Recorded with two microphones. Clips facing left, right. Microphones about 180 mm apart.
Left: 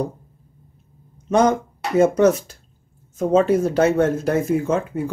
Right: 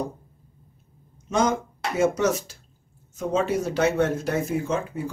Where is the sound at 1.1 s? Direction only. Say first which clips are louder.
Left 6 dB; 60° left (ahead or behind).